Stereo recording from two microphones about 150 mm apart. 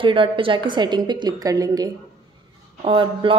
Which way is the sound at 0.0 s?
35° right (ahead or behind).